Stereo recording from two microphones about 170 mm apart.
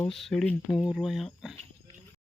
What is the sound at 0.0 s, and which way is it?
A man's voice, centre (ahead or behind).